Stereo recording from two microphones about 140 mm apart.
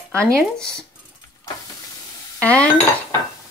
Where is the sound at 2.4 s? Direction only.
10° left (ahead or behind).